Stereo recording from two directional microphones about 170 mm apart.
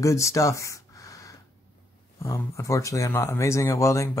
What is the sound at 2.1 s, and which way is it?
Speech, 15° left (ahead or behind).